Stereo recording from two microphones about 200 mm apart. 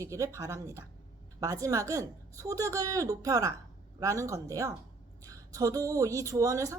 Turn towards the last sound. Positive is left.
turn(degrees=-15)  # may be behind; listen again after turning